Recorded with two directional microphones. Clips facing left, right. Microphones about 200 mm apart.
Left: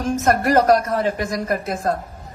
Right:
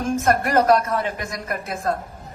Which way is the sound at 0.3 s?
35° left (ahead or behind).